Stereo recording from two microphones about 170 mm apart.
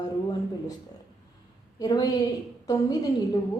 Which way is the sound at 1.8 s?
20° left (ahead or behind).